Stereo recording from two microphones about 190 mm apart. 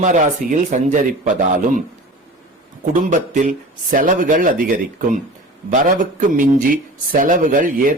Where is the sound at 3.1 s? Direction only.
40° right (ahead or behind).